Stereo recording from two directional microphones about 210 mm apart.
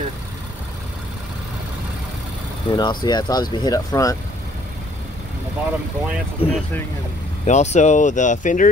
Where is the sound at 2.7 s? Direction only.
20° left (ahead or behind).